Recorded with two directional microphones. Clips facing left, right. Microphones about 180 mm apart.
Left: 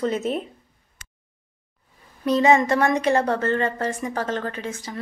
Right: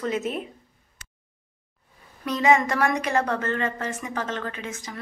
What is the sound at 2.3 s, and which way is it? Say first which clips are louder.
A woman's voice: left 3 dB; 30° left (ahead or behind).